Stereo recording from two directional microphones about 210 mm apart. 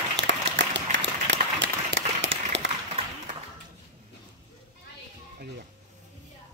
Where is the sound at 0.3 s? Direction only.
55° right (ahead or behind).